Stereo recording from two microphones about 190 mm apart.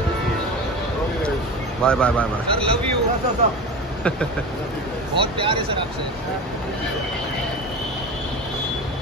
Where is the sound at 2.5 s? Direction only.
30° right (ahead or behind).